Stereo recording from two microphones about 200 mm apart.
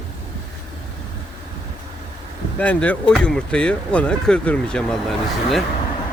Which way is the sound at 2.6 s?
5° left (ahead or behind).